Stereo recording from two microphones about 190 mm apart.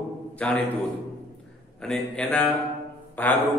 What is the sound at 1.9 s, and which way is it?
A man's voice, 5° left (ahead or behind).